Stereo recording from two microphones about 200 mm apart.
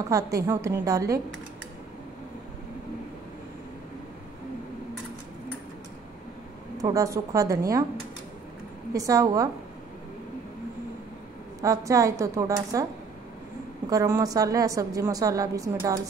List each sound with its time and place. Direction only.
0.1 s a woman's voice: 15° right (ahead or behind)
6.8 s a woman's voice: 15° right (ahead or behind)
8.9 s a woman's voice: 15° right (ahead or behind)
11.6 s a woman's voice: 15° right (ahead or behind)
13.8 s a woman's voice: 15° right (ahead or behind)